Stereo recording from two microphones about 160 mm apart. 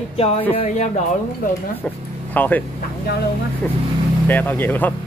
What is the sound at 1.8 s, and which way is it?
Speech, 10° left (ahead or behind).